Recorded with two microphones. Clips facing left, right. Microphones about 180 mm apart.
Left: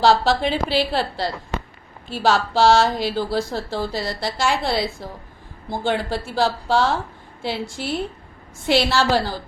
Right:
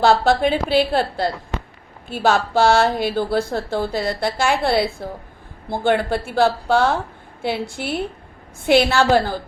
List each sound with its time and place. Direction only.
0.0 s a woman's voice: 55° right (ahead or behind)